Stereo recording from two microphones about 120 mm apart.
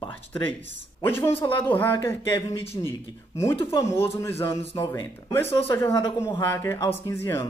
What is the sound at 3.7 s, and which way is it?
Speech, 20° left (ahead or behind).